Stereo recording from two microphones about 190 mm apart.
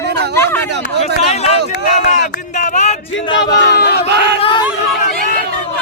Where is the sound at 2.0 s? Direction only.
40° left (ahead or behind).